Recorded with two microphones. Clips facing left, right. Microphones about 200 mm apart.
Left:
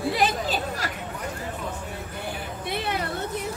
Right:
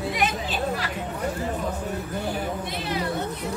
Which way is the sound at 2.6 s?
60° left (ahead or behind).